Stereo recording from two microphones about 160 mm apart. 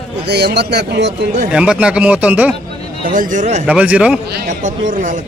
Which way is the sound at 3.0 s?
60° right (ahead or behind).